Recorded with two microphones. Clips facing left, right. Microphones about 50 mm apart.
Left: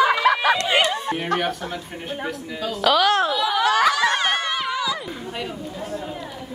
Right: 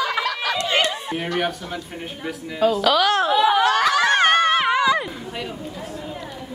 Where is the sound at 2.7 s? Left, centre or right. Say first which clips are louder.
Left 5 dB; centre.